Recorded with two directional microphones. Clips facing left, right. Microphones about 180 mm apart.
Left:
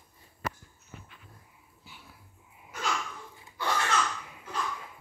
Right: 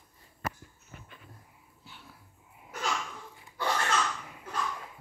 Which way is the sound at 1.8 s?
5° left (ahead or behind).